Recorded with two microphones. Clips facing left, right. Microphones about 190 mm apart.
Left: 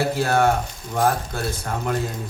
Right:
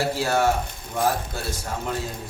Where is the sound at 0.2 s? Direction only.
55° left (ahead or behind).